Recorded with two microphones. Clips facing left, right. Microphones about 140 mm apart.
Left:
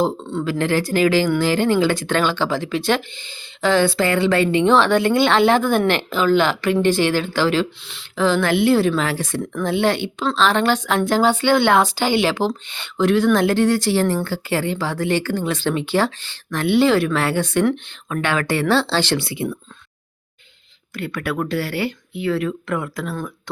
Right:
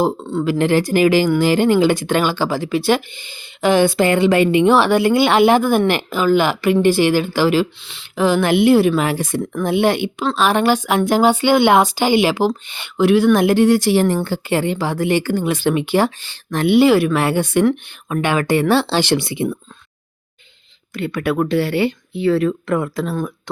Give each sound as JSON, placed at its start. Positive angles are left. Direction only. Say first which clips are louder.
{"t": 0.0, "sound": "speech", "louder": "right 3 dB", "side_deg": -10}
{"t": 0.6, "sound": "speech", "louder": "right 3 dB", "side_deg": -15}
{"t": 20.9, "sound": "speech", "louder": "right 5 dB", "side_deg": -20}